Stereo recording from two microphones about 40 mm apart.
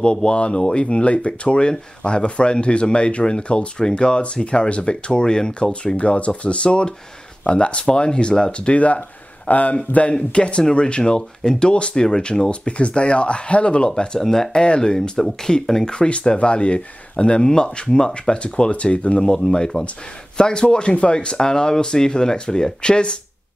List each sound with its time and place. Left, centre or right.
0.0 s speech: left
10.3 s speech: left
13.8 s speech: centre
14.2 s speech: centre
14.5 s speech: left
15.0 s speech: centre
15.8 s speech: left
19.2 s speech: centre